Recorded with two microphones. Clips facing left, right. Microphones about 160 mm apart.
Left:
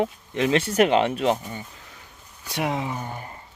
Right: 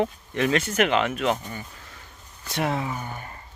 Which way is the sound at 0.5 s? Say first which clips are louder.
Left 5 dB; 35° left (ahead or behind).